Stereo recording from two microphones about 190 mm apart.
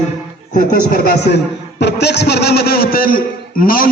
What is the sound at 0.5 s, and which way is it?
A man's voice, 50° left (ahead or behind).